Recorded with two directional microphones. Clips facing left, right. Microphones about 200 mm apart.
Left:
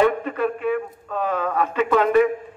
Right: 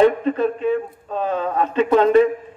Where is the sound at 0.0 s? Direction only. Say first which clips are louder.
Right 4 dB; 25° right (ahead or behind).